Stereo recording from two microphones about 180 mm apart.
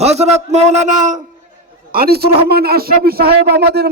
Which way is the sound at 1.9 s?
60° right (ahead or behind).